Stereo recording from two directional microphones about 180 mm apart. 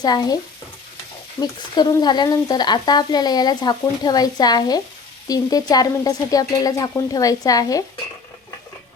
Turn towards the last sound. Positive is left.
turn(degrees=20)  # may be behind; listen again after turning